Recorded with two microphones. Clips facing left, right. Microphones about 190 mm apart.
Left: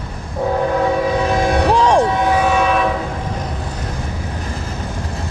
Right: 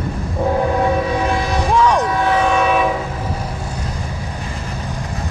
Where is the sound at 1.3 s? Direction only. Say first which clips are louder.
Left 3 dB; 55° left (ahead or behind).